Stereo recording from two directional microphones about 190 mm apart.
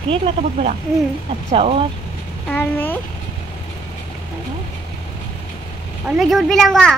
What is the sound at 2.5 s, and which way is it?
Speech, 10° left (ahead or behind).